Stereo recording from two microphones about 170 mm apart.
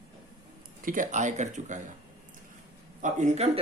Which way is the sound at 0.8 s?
50° right (ahead or behind).